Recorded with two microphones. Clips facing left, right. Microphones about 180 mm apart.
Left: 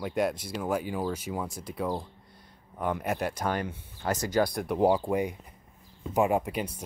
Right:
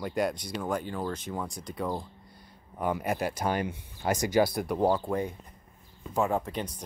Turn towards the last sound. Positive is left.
turn(degrees=10)  # may be behind; listen again after turning